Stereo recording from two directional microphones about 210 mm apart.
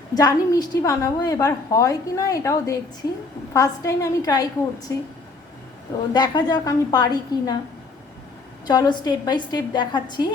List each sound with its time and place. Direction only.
0.1 s a woman's voice: 20° left (ahead or behind)
6.1 s a woman's voice: 20° left (ahead or behind)
8.6 s a woman's voice: 20° left (ahead or behind)